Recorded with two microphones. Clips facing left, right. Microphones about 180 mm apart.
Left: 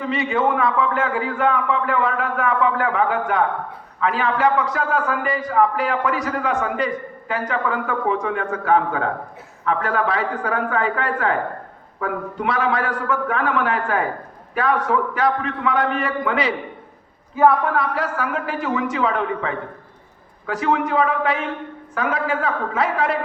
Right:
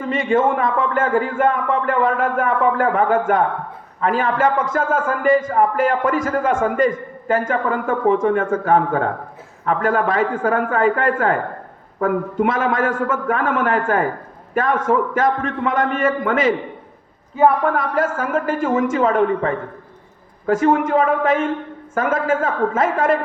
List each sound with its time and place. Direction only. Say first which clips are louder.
0.0 s a man's voice: right 3 dB; 45° right (ahead or behind)
17.7 s a man's voice: right 3 dB; 45° right (ahead or behind)